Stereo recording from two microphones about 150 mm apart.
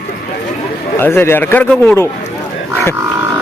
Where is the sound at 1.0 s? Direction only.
15° left (ahead or behind).